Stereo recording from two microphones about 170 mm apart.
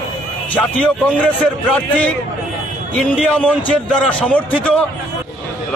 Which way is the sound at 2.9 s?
5° left (ahead or behind).